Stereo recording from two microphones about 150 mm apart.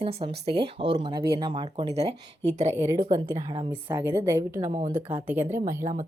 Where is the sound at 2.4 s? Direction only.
50° right (ahead or behind).